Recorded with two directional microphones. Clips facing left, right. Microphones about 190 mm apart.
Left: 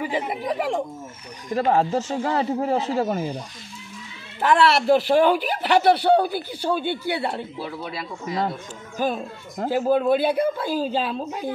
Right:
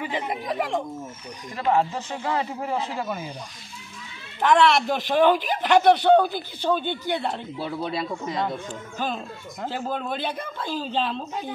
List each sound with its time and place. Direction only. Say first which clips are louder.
0.0 s speech: left 3 dB; 5° left (ahead or behind)
1.5 s speech: left 3 dB; 40° left (ahead or behind)
4.4 s speech: even; 5° left (ahead or behind)
8.9 s speech: left 6 dB; 10° left (ahead or behind)